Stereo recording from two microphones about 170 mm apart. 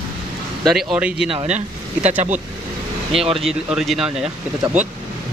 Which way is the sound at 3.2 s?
35° right (ahead or behind).